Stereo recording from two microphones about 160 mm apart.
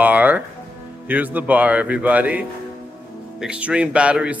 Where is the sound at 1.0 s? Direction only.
10° right (ahead or behind).